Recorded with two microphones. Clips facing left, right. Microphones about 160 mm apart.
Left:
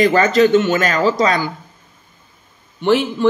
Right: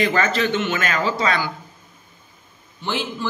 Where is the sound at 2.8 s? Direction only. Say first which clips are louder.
Left 11 dB; 65° left (ahead or behind).